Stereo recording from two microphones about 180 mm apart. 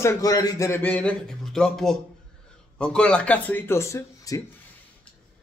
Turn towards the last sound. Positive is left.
turn(degrees=15)  # may be behind; listen again after turning